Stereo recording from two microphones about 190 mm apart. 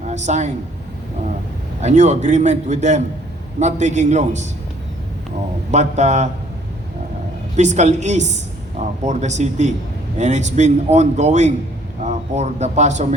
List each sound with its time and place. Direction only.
0.1 s a man's voice: 40° right (ahead or behind)
1.8 s a man's voice: 40° right (ahead or behind)
5.7 s a man's voice: 40° right (ahead or behind)
7.5 s a man's voice: 40° right (ahead or behind)